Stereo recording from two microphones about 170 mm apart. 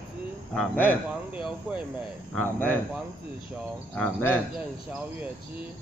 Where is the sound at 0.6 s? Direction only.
10° left (ahead or behind).